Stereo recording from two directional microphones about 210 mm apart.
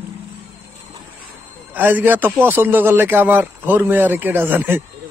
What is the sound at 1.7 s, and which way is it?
A man's voice, 10° right (ahead or behind).